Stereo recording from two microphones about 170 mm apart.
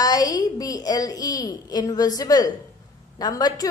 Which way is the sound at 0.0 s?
20° left (ahead or behind).